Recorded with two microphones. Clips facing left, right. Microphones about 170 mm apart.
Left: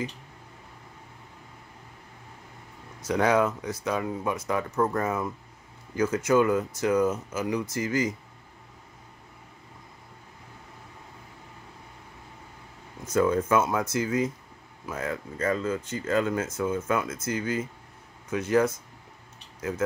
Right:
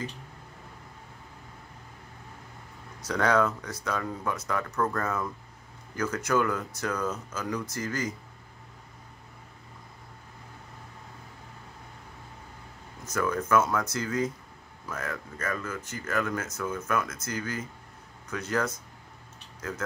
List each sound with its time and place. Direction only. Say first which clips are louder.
3.1 s speech: left 2 dB; 20° left (ahead or behind)
13.0 s speech: left 6 dB; 25° left (ahead or behind)